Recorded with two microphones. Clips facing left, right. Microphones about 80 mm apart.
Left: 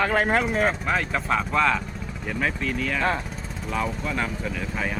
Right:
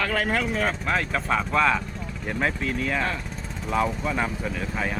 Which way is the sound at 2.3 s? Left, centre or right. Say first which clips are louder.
Even; centre.